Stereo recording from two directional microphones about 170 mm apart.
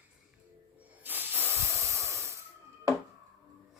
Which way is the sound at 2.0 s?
15° right (ahead or behind).